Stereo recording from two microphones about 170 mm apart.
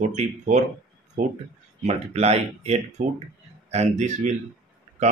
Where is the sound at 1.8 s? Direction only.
40° right (ahead or behind).